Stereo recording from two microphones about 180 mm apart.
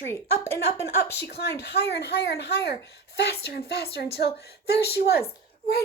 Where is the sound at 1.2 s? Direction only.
65° left (ahead or behind).